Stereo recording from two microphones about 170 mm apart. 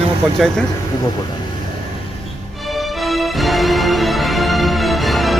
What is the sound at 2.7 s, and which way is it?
Music, centre (ahead or behind).